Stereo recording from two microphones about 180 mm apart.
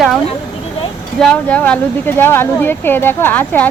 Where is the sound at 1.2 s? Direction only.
5° left (ahead or behind).